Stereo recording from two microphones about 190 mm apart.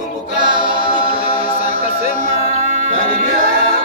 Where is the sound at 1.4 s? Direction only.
35° right (ahead or behind).